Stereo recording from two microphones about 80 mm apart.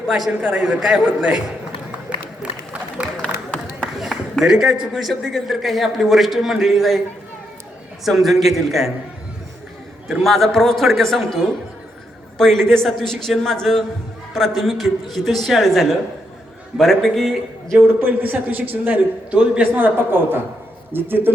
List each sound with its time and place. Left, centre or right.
0.3 s a man's voice: centre
0.6 s a man's voice: centre
1.0 s a man's voice: centre
3.2 s a sound: centre
4.1 s a sound: centre
4.9 s a man's voice: centre
8.0 s a man's voice: centre
10.1 s a man's voice: centre
17.7 s a man's voice: right
19.7 s a man's voice: right